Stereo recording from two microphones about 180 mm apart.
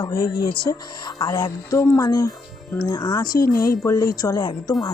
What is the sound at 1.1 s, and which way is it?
Speech, 20° left (ahead or behind).